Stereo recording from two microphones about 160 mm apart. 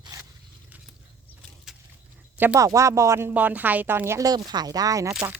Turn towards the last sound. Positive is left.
turn(degrees=-20)  # may be behind; listen again after turning